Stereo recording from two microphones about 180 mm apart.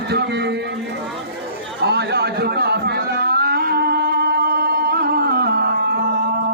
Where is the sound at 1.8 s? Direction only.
65° right (ahead or behind).